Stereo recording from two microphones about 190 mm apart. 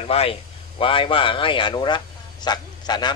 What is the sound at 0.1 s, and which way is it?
Speech, 30° left (ahead or behind).